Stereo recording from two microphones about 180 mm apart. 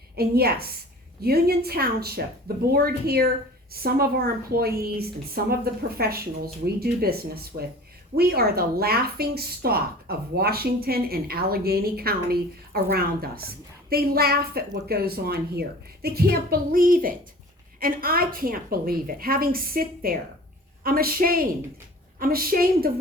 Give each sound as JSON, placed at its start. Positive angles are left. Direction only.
{"t": 0.2, "sound": "a woman's voice", "side_deg": -60}